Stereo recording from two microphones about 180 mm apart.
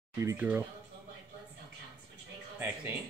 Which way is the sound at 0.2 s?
15° right (ahead or behind).